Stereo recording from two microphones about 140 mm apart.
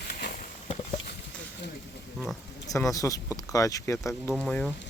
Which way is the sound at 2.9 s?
25° left (ahead or behind).